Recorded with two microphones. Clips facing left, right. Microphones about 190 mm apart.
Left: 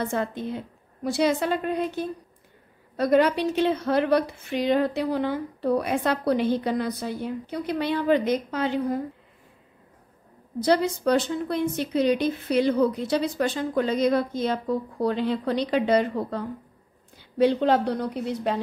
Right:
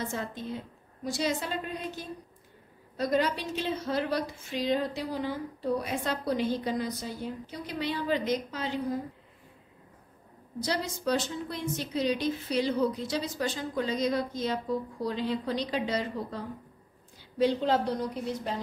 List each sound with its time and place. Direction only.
0.0 s a woman's voice: 60° left (ahead or behind)
10.6 s a woman's voice: 60° left (ahead or behind)